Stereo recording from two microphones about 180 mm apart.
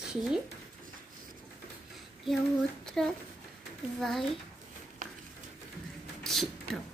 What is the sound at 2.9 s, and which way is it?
A child's voice, 5° left (ahead or behind).